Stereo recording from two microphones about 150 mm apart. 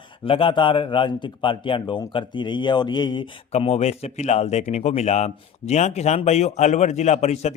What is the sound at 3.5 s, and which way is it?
Speech, 45° left (ahead or behind).